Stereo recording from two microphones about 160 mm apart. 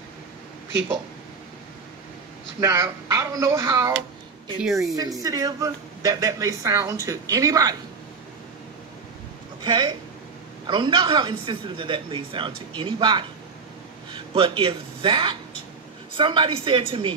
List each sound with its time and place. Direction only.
2.6 s speech: 15° right (ahead or behind)
9.6 s speech: 25° right (ahead or behind)